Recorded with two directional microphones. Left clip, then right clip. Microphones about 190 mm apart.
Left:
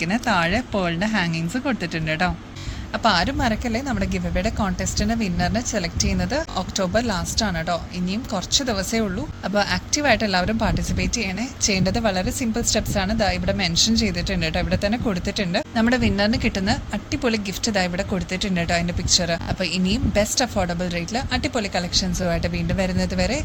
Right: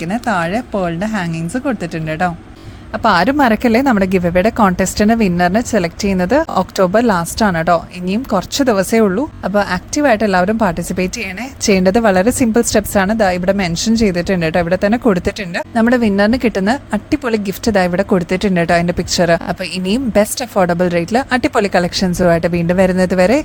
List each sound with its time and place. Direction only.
0.1 s speech: 35° right (ahead or behind)
3.0 s a woman's voice: 50° right (ahead or behind)
9.0 s a woman's voice: 45° right (ahead or behind)